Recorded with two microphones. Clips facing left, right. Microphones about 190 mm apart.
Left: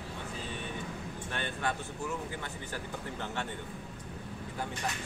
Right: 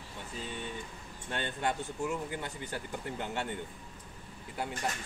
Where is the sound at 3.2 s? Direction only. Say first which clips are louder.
Right 1 dB; 15° right (ahead or behind).